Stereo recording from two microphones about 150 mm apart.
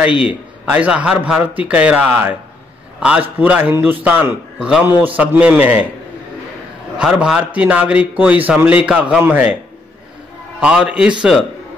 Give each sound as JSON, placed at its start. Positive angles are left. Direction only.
{"t": 0.1, "sound": "a man's voice", "side_deg": 35}
{"t": 0.7, "sound": "a man's voice", "side_deg": -10}
{"t": 7.0, "sound": "a man's voice", "side_deg": -5}
{"t": 10.6, "sound": "a man's voice", "side_deg": -5}